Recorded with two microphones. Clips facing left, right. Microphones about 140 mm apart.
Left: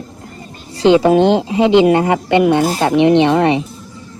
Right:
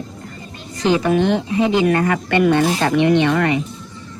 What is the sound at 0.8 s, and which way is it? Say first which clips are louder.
Speech: left 6 dB; 30° left (ahead or behind).